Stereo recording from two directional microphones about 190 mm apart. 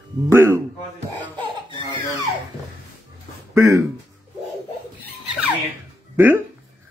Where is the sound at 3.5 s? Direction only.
15° right (ahead or behind).